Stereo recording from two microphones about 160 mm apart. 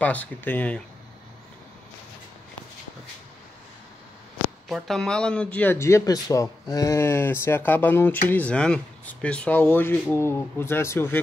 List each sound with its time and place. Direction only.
0.0 s a man's voice: 10° left (ahead or behind)
4.6 s a man's voice: centre (ahead or behind)